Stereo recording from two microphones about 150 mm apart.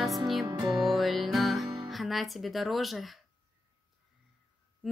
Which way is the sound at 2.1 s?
Centre (ahead or behind).